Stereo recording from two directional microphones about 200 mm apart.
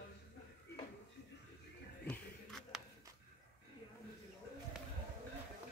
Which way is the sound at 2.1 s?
Centre (ahead or behind).